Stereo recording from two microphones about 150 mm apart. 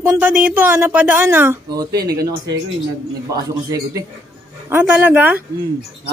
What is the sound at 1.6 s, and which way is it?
Speech, 25° right (ahead or behind).